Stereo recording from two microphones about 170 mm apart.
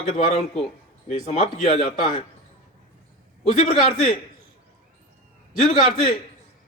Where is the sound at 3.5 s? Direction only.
40° left (ahead or behind).